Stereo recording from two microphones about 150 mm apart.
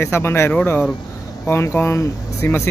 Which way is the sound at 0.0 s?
15° left (ahead or behind).